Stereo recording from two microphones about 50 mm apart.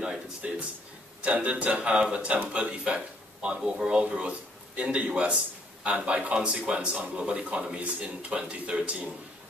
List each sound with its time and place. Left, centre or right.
0.4 s speech: right
4.0 s speech: right